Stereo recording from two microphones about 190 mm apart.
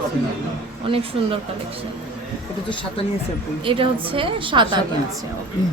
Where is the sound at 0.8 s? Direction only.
30° right (ahead or behind).